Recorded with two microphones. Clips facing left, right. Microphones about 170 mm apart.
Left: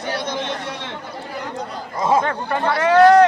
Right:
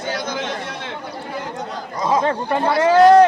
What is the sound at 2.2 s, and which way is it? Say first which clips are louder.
Speech: right 2 dB; 20° right (ahead or behind).